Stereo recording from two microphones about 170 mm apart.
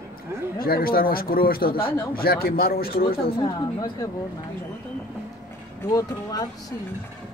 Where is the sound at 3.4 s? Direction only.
20° left (ahead or behind).